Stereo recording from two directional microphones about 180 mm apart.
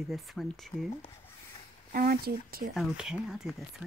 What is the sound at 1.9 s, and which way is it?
Speech, 55° right (ahead or behind).